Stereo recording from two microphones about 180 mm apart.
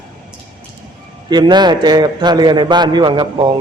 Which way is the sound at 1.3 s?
25° right (ahead or behind).